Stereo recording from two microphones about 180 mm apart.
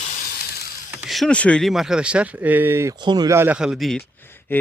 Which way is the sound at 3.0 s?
25° right (ahead or behind).